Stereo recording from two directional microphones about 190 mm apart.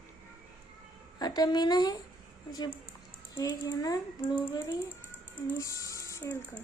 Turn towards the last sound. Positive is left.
turn(degrees=15)  # may be behind; listen again after turning